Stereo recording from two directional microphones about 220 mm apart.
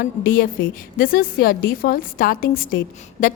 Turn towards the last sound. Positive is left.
turn(degrees=40)  # may be behind; listen again after turning